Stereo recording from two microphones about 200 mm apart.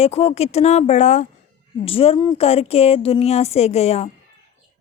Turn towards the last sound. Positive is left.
turn(degrees=30)  # may be behind; listen again after turning